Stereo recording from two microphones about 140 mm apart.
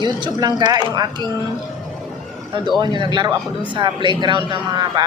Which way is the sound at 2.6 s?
30° right (ahead or behind).